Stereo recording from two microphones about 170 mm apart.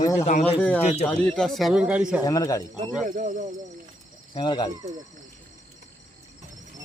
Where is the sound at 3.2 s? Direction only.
50° right (ahead or behind).